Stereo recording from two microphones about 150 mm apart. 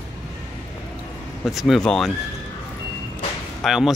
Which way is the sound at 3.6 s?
Centre (ahead or behind).